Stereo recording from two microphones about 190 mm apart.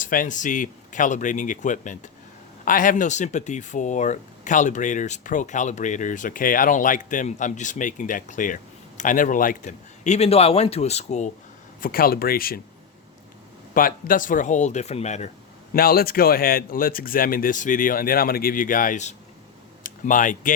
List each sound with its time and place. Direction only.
0.0 s speech: 45° left (ahead or behind)
11.8 s speech: 50° left (ahead or behind)
13.7 s speech: 45° left (ahead or behind)
15.7 s speech: 50° left (ahead or behind)